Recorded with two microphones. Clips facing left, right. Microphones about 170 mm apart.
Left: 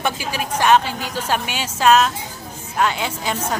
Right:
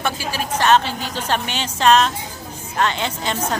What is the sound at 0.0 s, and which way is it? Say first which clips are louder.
A woman's voice: even; 15° left (ahead or behind).